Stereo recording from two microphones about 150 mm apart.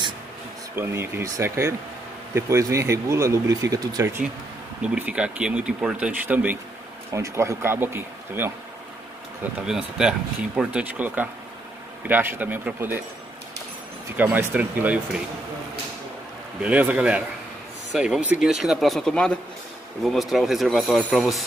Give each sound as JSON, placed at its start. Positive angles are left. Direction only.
{"t": 0.7, "sound": "speech", "side_deg": -15}
{"t": 4.8, "sound": "speech", "side_deg": -10}
{"t": 14.1, "sound": "speech", "side_deg": -10}
{"t": 16.6, "sound": "speech", "side_deg": -10}